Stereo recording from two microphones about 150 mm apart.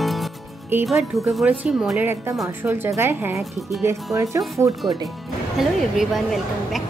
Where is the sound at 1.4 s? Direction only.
10° right (ahead or behind).